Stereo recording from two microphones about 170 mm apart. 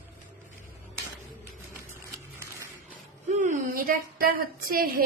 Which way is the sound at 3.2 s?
45° right (ahead or behind).